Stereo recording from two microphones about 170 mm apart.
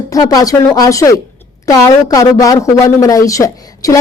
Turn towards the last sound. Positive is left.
turn(degrees=20)  # may be behind; listen again after turning